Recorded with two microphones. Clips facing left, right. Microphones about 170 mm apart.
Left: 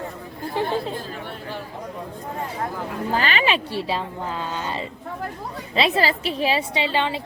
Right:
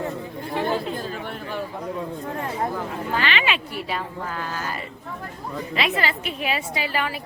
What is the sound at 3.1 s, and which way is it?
A woman's voice, 40° left (ahead or behind).